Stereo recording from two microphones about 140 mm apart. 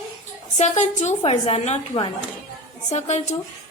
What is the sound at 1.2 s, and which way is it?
A woman's voice, 45° left (ahead or behind).